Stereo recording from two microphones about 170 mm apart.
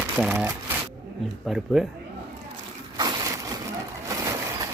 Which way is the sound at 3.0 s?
25° right (ahead or behind).